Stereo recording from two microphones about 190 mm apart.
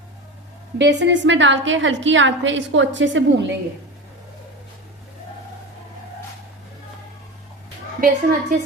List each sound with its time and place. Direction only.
0.8 s a woman's voice: 70° right (ahead or behind)
8.0 s a woman's voice: 50° right (ahead or behind)